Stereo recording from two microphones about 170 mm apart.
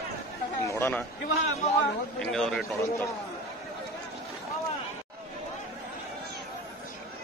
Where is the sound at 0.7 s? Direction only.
15° left (ahead or behind).